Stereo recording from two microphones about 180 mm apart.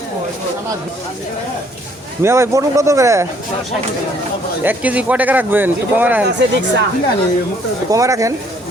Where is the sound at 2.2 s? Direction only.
15° right (ahead or behind).